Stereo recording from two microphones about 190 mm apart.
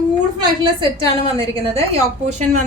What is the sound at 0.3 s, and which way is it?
Speech, 25° right (ahead or behind).